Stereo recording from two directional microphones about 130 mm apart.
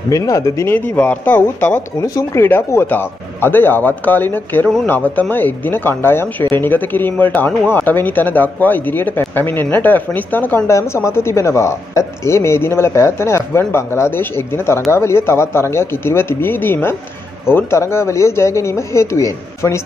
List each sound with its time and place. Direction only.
0.1 s speech: 25° left (ahead or behind)